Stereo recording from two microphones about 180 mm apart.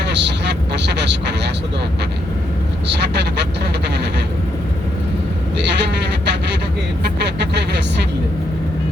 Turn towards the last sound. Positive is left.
turn(degrees=-70)  # may be behind; listen again after turning